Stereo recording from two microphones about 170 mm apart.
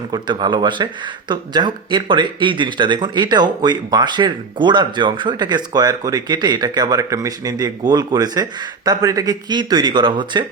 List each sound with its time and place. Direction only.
0.1 s speech: 25° right (ahead or behind)